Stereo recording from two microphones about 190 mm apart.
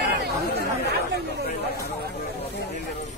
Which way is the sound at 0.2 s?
60° right (ahead or behind).